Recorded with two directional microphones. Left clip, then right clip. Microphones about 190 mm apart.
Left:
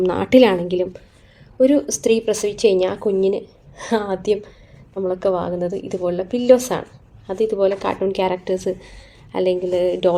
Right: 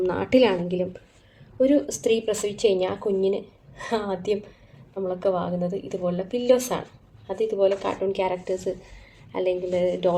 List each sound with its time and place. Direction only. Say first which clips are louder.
0.0 s a woman's voice: left 6 dB; 45° left (ahead or behind)